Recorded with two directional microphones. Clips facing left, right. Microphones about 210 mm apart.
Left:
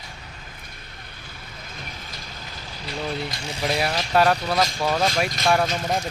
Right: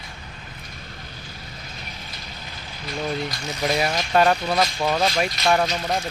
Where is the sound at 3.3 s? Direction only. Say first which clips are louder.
Right 1 dB; 30° left (ahead or behind).